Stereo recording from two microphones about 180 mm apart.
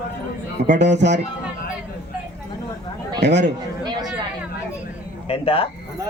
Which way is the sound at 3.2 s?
75° right (ahead or behind).